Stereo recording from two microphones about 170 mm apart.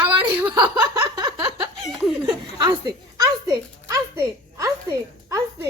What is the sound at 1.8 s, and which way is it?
Chuckle, centre (ahead or behind).